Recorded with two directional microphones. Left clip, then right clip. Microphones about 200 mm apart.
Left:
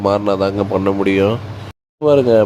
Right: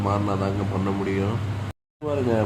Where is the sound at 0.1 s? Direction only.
40° left (ahead or behind).